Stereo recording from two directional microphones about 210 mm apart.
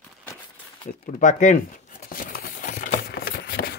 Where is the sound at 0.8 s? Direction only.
35° left (ahead or behind).